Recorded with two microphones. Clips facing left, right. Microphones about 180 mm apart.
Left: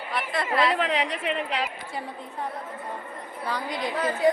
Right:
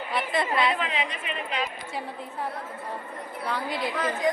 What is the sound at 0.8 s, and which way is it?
Speech, 80° left.